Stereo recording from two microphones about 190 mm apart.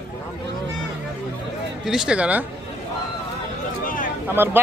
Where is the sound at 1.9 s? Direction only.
5° right (ahead or behind).